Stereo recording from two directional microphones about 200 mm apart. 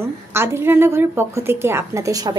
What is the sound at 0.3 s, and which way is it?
A woman's voice, 10° right (ahead or behind).